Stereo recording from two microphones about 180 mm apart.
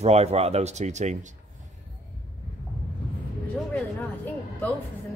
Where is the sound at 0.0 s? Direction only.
35° right (ahead or behind).